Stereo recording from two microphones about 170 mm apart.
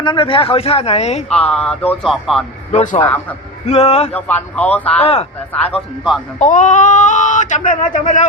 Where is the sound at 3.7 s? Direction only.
35° left (ahead or behind).